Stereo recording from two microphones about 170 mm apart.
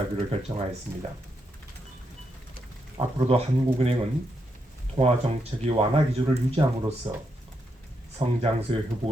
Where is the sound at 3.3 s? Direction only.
35° right (ahead or behind).